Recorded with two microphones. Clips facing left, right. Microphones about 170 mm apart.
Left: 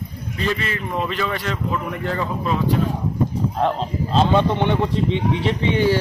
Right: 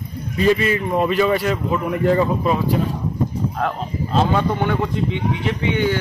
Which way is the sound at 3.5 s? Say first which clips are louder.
Left 2 dB; 25° left (ahead or behind).